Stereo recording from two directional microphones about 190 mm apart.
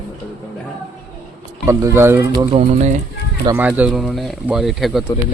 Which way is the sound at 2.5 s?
35° right (ahead or behind).